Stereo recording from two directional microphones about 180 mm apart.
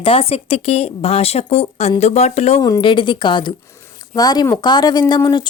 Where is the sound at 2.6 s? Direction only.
25° left (ahead or behind).